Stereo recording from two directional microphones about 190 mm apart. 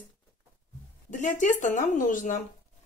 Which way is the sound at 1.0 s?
40° left (ahead or behind).